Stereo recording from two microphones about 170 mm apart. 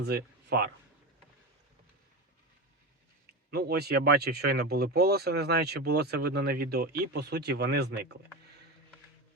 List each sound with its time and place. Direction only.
0.0 s speech: 70° right (ahead or behind)
3.5 s speech: 70° right (ahead or behind)